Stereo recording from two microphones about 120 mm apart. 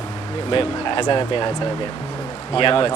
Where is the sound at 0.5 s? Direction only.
45° left (ahead or behind).